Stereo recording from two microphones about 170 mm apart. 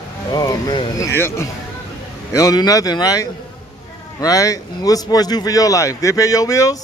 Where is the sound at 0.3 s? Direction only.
20° left (ahead or behind).